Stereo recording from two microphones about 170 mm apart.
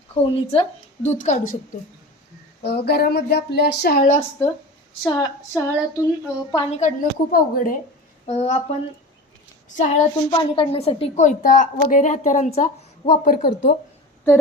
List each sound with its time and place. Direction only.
0.1 s speech: 35° left (ahead or behind)
1.0 s a woman's voice: 45° left (ahead or behind)
2.6 s a woman's voice: 70° left (ahead or behind)
5.0 s a woman's voice: 25° left (ahead or behind)
6.7 s a woman's voice: 45° left (ahead or behind)
8.3 s speech: 35° left (ahead or behind)
9.6 s a woman's voice: 45° left (ahead or behind)
10.2 s a woman's voice: 30° left (ahead or behind); by 13.5 s 50° left (ahead or behind)